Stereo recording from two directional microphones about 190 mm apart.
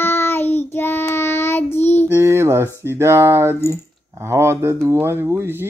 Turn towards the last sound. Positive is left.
turn(degrees=-10)  # may be behind; listen again after turning